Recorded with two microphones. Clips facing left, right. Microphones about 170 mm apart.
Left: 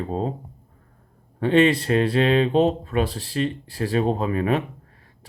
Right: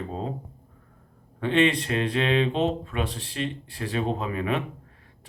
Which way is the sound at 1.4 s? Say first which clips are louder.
Left 5 dB; 40° left (ahead or behind).